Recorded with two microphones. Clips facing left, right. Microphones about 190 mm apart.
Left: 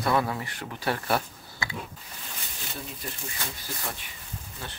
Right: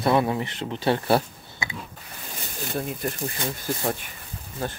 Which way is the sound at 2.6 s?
55° right (ahead or behind).